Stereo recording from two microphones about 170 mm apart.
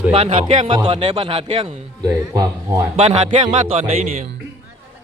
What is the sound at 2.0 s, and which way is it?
Speech, 20° right (ahead or behind).